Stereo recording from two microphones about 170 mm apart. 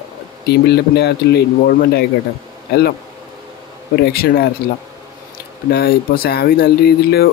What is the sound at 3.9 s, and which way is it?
Speech, 65° left (ahead or behind).